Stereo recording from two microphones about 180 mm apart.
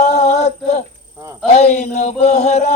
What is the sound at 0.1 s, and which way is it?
Female singing, 35° left (ahead or behind).